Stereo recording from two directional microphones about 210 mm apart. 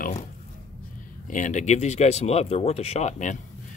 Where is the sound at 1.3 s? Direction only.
35° left (ahead or behind).